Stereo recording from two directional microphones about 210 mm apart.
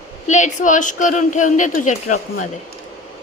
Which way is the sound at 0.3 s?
35° left (ahead or behind).